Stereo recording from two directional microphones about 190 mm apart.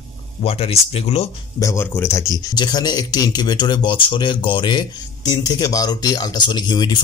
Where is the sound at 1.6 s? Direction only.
15° left (ahead or behind).